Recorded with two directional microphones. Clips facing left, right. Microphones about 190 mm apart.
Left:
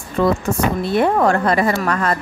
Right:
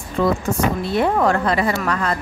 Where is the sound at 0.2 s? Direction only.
60° left (ahead or behind).